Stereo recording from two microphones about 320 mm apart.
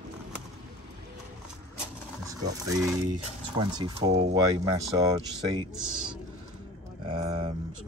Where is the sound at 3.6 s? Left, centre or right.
Centre.